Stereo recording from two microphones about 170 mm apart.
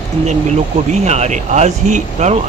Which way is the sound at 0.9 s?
45° right (ahead or behind).